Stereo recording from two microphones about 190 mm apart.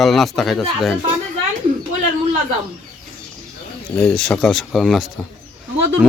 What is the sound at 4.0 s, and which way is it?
Speech, 5° left (ahead or behind).